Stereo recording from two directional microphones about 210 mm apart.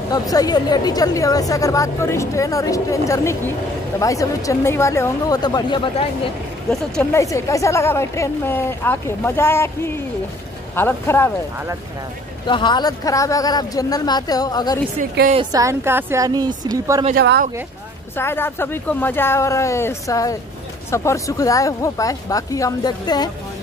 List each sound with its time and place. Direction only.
0.1 s a woman's voice: 20° left (ahead or behind)
6.7 s a woman's voice: 10° left (ahead or behind)
12.4 s speech: 20° left (ahead or behind)
15.3 s a woman's voice: 15° right (ahead or behind)
17.1 s speech: 50° right (ahead or behind)
18.1 s a woman's voice: 10° left (ahead or behind)